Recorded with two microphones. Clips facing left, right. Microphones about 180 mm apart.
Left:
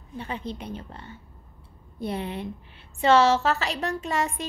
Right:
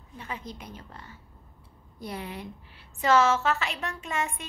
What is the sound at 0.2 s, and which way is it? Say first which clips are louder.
A woman's voice: left 5 dB; 30° left (ahead or behind).